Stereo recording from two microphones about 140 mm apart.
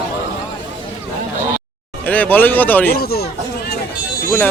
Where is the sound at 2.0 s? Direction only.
10° left (ahead or behind).